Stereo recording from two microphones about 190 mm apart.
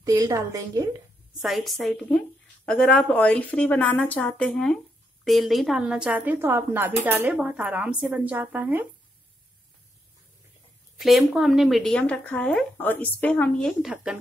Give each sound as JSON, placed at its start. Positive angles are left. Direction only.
{"t": 0.0, "sound": "a woman's voice", "side_deg": -20}
{"t": 1.4, "sound": "speech", "side_deg": 0}
{"t": 11.0, "sound": "speech", "side_deg": 0}